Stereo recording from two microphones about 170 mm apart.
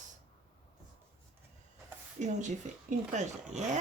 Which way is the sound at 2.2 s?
45° right (ahead or behind).